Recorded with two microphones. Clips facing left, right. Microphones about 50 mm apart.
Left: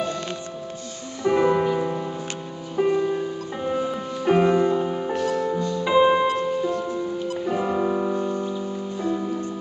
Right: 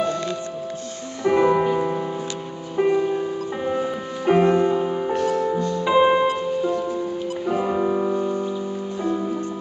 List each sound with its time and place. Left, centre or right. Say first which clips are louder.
1.2 s music: right 2 dB; centre